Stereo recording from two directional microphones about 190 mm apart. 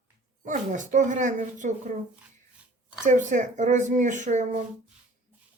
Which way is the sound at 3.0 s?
40° right (ahead or behind).